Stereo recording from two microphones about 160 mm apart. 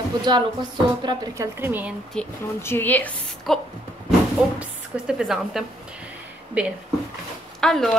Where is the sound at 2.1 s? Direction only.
5° left (ahead or behind).